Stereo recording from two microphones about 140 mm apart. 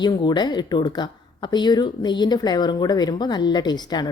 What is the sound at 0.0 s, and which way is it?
Speech, 30° left (ahead or behind).